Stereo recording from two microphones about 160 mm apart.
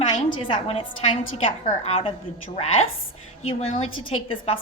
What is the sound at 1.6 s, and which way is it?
Speech, 45° left (ahead or behind).